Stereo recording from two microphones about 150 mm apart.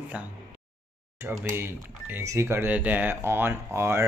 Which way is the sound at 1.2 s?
15° right (ahead or behind).